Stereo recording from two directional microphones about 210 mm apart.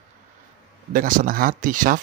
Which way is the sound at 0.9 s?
40° right (ahead or behind).